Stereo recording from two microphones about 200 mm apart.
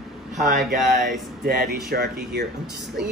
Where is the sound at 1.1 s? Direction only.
50° right (ahead or behind).